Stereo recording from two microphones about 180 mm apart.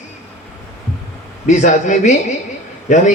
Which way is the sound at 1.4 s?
40° left (ahead or behind).